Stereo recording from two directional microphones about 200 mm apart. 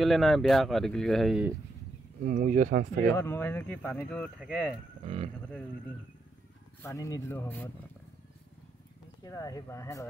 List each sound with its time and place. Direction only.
0.0 s speech: centre (ahead or behind)
2.2 s speech: 40° right (ahead or behind)
3.2 s speech: 10° left (ahead or behind)
5.0 s speech: 30° right (ahead or behind)
6.8 s speech: 15° left (ahead or behind)
9.2 s speech: 15° left (ahead or behind)